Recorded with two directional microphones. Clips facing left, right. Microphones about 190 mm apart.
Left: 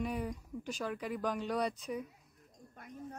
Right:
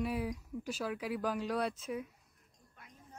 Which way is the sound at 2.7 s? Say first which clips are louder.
Left 10 dB; 55° left (ahead or behind).